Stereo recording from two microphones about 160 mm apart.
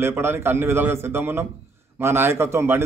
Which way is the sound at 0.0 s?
15° right (ahead or behind).